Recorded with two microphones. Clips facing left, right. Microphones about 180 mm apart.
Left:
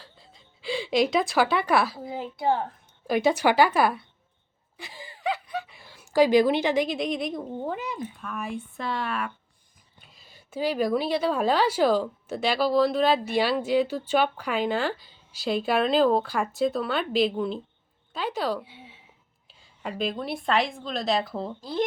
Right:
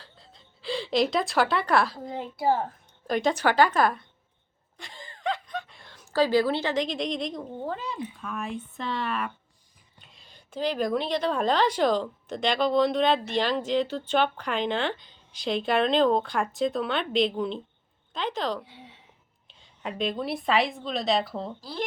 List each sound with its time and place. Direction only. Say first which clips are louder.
0.0 s speech: left 1 dB; centre (ahead or behind)
4.8 s chuckle: left 1 dB; 5° left (ahead or behind)
7.6 s a woman's voice: left 1 dB; 15° left (ahead or behind)
21.6 s speech: left 10 dB; 20° left (ahead or behind)